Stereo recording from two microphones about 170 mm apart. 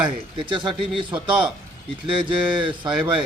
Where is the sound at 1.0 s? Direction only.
30° right (ahead or behind).